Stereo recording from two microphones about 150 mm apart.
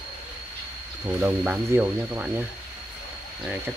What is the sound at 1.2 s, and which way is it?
Speech, 10° right (ahead or behind).